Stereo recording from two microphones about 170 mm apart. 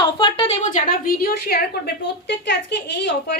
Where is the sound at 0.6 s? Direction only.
50° left (ahead or behind).